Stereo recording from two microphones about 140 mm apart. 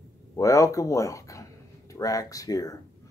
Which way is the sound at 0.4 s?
20° left (ahead or behind).